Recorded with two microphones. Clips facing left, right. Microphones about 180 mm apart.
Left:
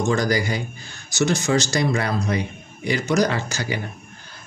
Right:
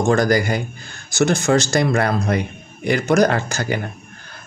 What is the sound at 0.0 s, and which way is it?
A man's voice, 55° right (ahead or behind).